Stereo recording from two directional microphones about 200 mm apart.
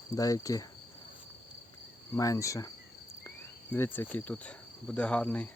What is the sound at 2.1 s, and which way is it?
Cricket, 15° left (ahead or behind).